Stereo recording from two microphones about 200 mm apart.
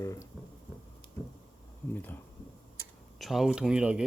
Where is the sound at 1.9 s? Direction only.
10° left (ahead or behind).